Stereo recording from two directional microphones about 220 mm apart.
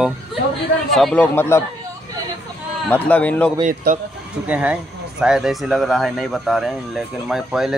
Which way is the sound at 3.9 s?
45° right (ahead or behind).